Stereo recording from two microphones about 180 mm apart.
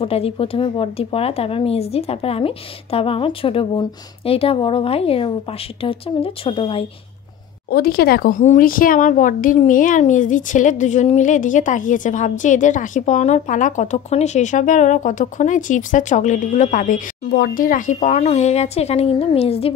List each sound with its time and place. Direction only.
0.0 s speech: 30° left (ahead or behind)
7.7 s speech: 60° left (ahead or behind); by 19.7 s 35° left (ahead or behind)